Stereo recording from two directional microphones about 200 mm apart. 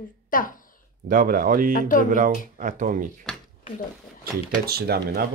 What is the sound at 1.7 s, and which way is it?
Speech, 45° left (ahead or behind).